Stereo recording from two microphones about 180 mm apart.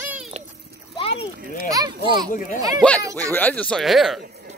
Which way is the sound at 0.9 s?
30° left (ahead or behind).